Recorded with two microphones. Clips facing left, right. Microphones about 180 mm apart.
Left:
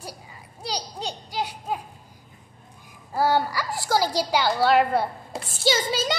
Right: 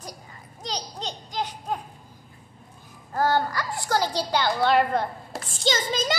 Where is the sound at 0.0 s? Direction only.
10° left (ahead or behind).